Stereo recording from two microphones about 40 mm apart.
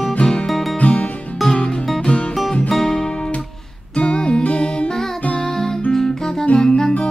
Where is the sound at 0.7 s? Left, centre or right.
Left.